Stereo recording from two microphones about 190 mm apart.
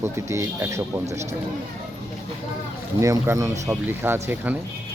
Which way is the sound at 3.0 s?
15° right (ahead or behind).